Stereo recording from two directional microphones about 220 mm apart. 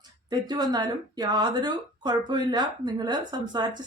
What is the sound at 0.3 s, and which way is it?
Speech, 20° right (ahead or behind).